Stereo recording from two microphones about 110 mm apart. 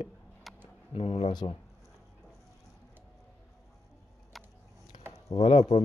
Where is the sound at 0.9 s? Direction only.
70° left (ahead or behind).